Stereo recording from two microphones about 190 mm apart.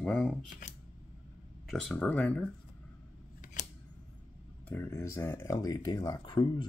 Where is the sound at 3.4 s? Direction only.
40° left (ahead or behind).